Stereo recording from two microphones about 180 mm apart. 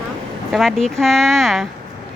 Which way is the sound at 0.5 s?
Centre (ahead or behind).